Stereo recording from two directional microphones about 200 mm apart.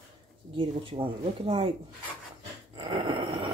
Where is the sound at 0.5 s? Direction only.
25° right (ahead or behind).